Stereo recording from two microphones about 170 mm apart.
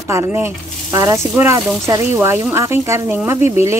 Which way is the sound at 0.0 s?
15° right (ahead or behind).